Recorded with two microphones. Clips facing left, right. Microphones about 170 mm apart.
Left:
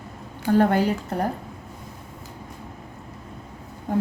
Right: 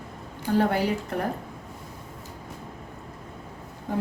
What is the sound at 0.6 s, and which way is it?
Speech, 45° left (ahead or behind).